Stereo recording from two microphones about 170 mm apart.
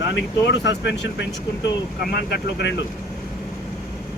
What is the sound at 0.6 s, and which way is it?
Speech, 90° left.